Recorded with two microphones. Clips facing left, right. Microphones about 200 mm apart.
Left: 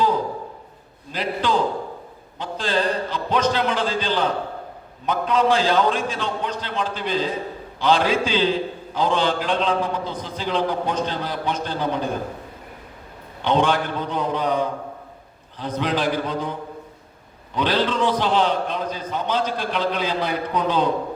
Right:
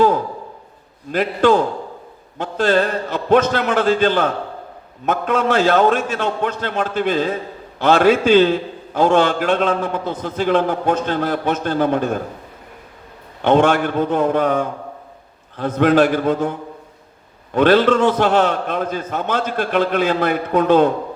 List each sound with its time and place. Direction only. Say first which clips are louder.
1.1 s a man's voice: right 8 dB; 50° right (ahead or behind)
13.4 s a man's voice: right 6 dB; 50° right (ahead or behind)